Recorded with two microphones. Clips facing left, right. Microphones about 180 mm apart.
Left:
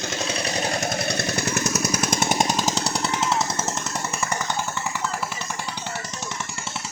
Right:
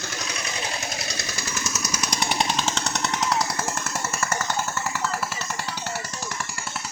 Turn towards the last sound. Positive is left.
turn(degrees=15)  # may be behind; listen again after turning